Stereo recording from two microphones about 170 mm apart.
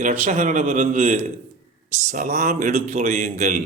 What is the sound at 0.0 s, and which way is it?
A man's voice, 45° right (ahead or behind).